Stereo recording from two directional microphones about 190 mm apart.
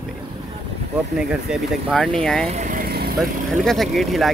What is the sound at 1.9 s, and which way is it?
Speech, 5° left (ahead or behind).